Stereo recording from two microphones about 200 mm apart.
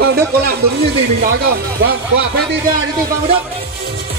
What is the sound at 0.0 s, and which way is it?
Speech, 50° right (ahead or behind).